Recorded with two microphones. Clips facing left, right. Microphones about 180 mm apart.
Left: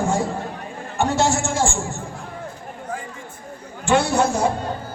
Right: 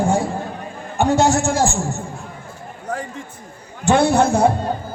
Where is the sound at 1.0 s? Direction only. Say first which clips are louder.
Right 4 dB; 35° right (ahead or behind).